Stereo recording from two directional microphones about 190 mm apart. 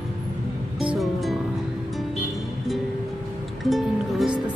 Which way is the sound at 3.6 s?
Centre (ahead or behind).